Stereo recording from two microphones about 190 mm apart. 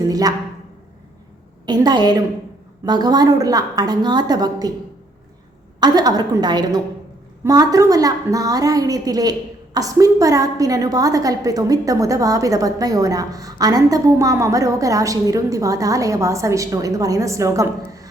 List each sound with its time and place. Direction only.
0.1 s speech: 20° right (ahead or behind)
1.6 s a woman's voice: 20° right (ahead or behind)
5.8 s a woman's voice: 20° right (ahead or behind)